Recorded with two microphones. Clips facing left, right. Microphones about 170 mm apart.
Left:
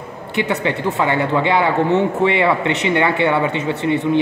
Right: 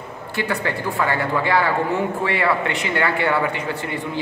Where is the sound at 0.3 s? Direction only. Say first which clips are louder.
Left 4 dB; 20° left (ahead or behind).